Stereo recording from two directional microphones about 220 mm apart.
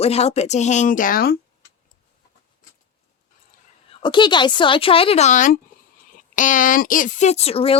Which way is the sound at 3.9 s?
20° left (ahead or behind).